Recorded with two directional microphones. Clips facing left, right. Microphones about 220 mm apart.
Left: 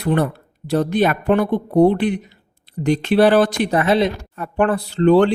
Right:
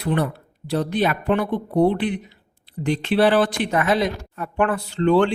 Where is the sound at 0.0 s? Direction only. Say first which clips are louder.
Left 4 dB; 50° left (ahead or behind).